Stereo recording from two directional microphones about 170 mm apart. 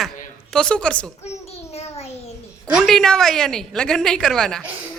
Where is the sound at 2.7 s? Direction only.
Centre (ahead or behind).